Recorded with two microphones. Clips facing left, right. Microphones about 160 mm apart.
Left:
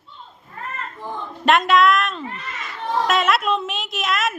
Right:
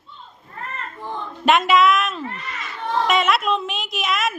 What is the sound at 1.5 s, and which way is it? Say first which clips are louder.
A woman's voice: even; centre (ahead or behind).